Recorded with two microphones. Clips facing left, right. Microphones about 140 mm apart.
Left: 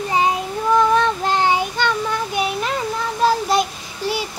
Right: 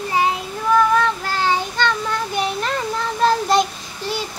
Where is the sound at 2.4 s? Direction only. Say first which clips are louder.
Even; 10° left (ahead or behind).